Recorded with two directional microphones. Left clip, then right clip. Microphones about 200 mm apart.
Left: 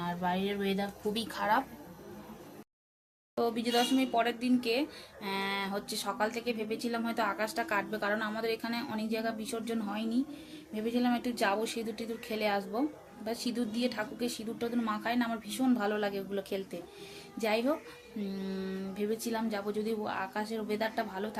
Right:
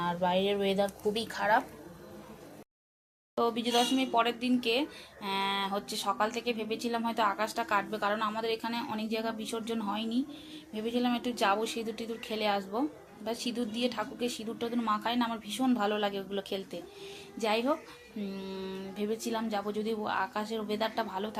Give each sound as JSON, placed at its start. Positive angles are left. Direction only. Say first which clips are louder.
{"t": 0.0, "sound": "speech", "louder": "right 5 dB", "side_deg": 0}
{"t": 3.3, "sound": "speech", "louder": "right 2 dB", "side_deg": 10}